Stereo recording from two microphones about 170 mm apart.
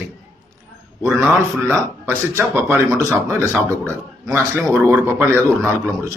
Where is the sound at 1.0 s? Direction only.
Centre (ahead or behind).